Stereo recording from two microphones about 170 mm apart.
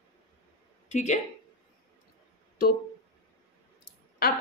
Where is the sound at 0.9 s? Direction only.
45° left (ahead or behind).